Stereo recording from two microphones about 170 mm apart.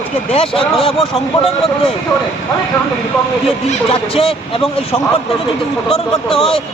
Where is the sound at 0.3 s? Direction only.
35° left (ahead or behind).